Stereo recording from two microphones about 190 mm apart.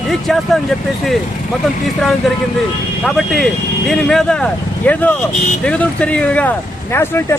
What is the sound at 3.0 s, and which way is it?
Speech, centre (ahead or behind).